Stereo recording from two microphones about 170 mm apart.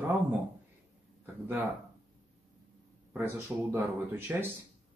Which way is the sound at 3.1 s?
15° right (ahead or behind).